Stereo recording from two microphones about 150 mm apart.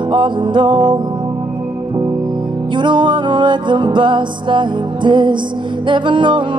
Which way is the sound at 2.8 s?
30° right (ahead or behind).